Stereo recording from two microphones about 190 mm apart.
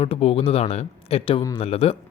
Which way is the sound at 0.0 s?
30° left (ahead or behind).